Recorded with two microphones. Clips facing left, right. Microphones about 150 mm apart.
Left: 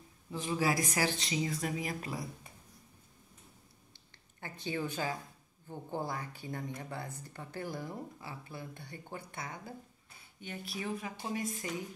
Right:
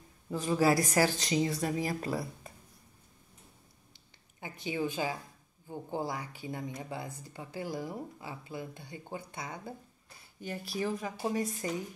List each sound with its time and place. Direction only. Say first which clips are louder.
0.3 s speech: right 5 dB; 40° right (ahead or behind)
4.6 s speech: right 3 dB; 15° right (ahead or behind)
10.4 s speech: right 6 dB; 35° right (ahead or behind)